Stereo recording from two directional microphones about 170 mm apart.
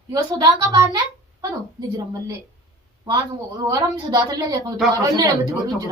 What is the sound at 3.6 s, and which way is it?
A woman's voice, 20° right (ahead or behind).